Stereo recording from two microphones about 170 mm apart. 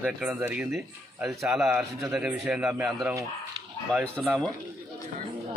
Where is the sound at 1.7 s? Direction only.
15° right (ahead or behind); by 4.5 s 5° left (ahead or behind).